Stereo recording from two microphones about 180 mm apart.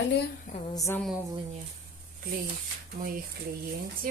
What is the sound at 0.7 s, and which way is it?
Speech, 20° left (ahead or behind).